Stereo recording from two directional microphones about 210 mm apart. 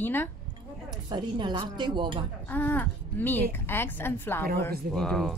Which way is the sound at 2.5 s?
10° left (ahead or behind).